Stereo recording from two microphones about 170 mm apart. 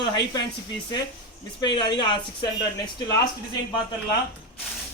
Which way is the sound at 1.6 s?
25° left (ahead or behind).